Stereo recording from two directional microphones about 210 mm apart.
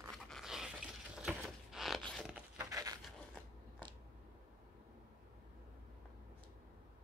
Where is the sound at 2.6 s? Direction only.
15° right (ahead or behind).